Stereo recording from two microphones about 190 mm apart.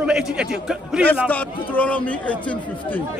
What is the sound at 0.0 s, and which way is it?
A man's voice, 5° right (ahead or behind).